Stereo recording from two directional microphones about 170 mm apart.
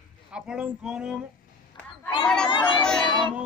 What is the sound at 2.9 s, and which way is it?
Music, 5° left (ahead or behind).